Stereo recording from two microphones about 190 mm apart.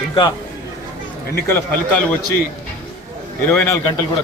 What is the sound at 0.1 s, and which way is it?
Speech, 25° left (ahead or behind).